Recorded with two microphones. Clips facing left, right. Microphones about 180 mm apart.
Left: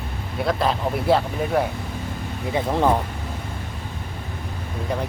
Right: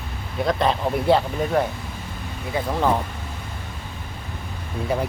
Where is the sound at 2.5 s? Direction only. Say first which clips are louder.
Left 2 dB; 20° left (ahead or behind).